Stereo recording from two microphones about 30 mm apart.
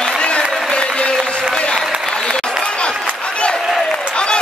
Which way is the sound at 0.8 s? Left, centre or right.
Left.